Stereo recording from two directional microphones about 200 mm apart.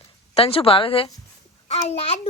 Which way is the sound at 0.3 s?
30° left (ahead or behind).